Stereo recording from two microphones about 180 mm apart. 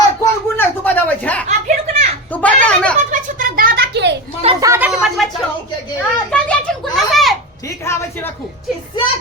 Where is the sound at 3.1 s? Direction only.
50° right (ahead or behind); by 4.1 s 70° right (ahead or behind).